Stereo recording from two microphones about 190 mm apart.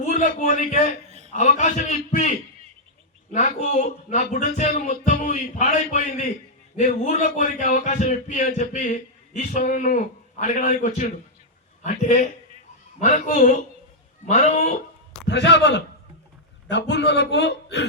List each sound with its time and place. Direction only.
0.0 s a man's voice: 40° left (ahead or behind)
3.3 s speech: 40° left (ahead or behind)
15.3 s a man's voice: 65° left (ahead or behind)